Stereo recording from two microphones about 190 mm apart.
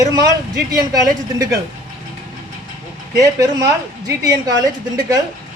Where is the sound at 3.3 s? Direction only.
20° right (ahead or behind).